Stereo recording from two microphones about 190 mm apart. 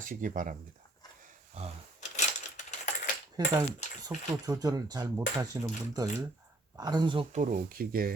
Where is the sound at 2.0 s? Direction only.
40° left (ahead or behind).